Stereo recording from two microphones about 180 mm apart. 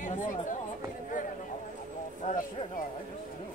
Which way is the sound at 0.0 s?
45° left (ahead or behind).